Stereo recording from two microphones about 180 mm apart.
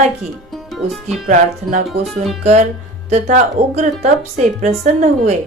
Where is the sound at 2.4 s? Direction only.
40° right (ahead or behind).